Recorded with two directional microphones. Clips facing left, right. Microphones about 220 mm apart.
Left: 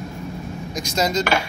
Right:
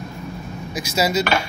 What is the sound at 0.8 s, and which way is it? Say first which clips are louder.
Speech: right 1 dB; 5° right (ahead or behind).